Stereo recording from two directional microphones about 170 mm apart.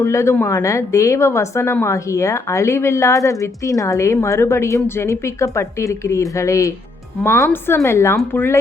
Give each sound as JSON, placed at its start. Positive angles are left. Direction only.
{"t": 0.0, "sound": "a woman's voice", "side_deg": 15}